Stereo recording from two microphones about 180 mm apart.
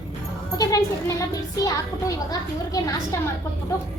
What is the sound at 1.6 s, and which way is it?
Speech, 20° left (ahead or behind).